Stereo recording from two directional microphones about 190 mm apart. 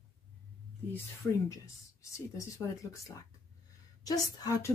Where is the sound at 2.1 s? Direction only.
15° left (ahead or behind).